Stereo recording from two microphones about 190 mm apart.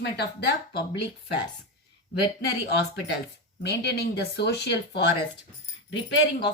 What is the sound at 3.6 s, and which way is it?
A woman's voice, 60° left (ahead or behind).